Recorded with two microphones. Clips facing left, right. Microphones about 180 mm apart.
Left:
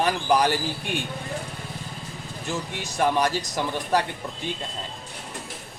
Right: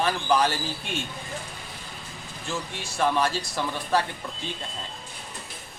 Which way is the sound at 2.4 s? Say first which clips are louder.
Left 2 dB; 20° left (ahead or behind).